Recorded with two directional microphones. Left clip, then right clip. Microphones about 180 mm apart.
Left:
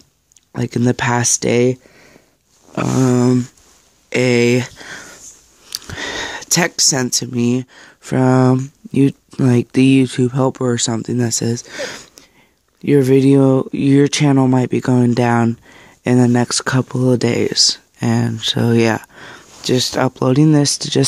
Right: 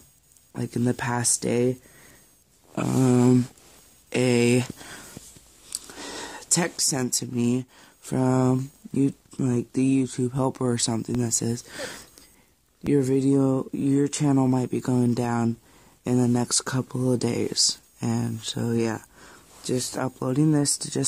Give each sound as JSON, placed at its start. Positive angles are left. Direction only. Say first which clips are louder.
{"t": 0.5, "sound": "speech", "louder": "left 9 dB", "side_deg": 30}
{"t": 5.7, "sound": "speech", "louder": "left 12 dB", "side_deg": 25}